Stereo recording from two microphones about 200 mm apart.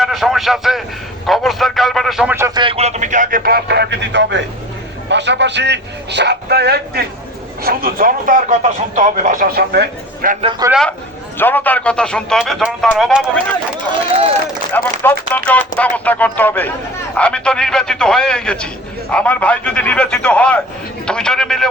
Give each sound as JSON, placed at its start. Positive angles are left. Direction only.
{"t": 0.0, "sound": "a man's voice", "side_deg": 0}
{"t": 2.6, "sound": "a man's voice", "side_deg": -30}
{"t": 10.7, "sound": "a man's voice", "side_deg": 0}
{"t": 14.7, "sound": "a man's voice", "side_deg": 10}